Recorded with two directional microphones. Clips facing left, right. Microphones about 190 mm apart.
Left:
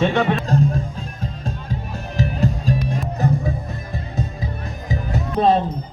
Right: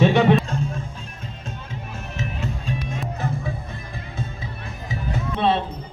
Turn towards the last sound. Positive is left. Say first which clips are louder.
# left 4 dB
turn(degrees=40)  # may be behind; listen again after turning